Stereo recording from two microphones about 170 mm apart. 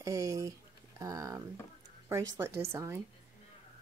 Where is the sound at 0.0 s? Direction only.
20° right (ahead or behind).